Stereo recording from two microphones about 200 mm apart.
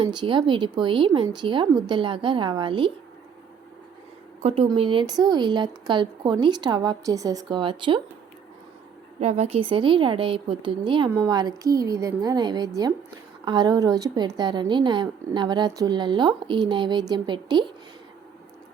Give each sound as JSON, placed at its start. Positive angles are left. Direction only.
{"t": 0.0, "sound": "a woman's voice", "side_deg": -25}
{"t": 4.4, "sound": "a woman's voice", "side_deg": -30}
{"t": 9.2, "sound": "a woman's voice", "side_deg": -35}